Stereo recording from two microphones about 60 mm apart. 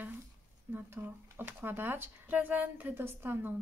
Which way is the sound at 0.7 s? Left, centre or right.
Right.